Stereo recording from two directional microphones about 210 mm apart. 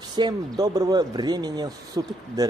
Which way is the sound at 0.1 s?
20° right (ahead or behind).